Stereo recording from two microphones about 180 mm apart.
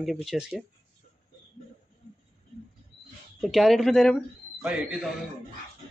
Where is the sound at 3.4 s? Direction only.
Centre (ahead or behind).